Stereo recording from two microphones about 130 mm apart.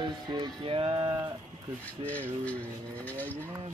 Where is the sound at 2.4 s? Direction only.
10° left (ahead or behind).